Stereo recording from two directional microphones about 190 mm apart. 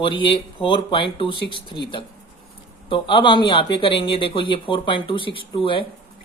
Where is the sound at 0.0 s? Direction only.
25° left (ahead or behind).